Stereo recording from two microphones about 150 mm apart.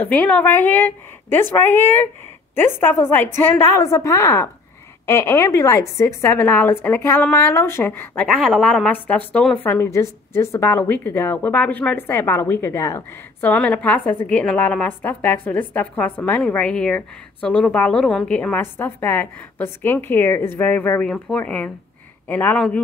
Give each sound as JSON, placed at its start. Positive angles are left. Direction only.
{"t": 0.0, "sound": "a woman's voice", "side_deg": 10}
{"t": 8.3, "sound": "a woman's voice", "side_deg": 0}
{"t": 13.5, "sound": "a woman's voice", "side_deg": 10}